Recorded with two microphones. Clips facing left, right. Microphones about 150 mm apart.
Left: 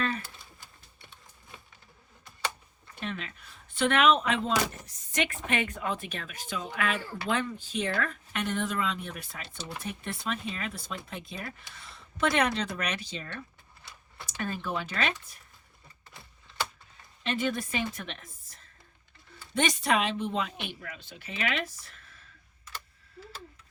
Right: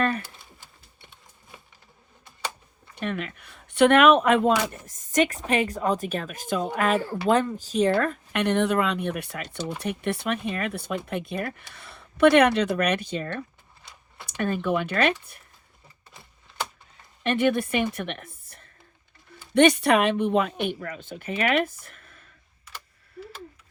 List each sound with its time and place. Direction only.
2.9 s speech: 60° right (ahead or behind)
8.4 s speech: 65° right (ahead or behind)
17.2 s a woman's voice: 60° right (ahead or behind)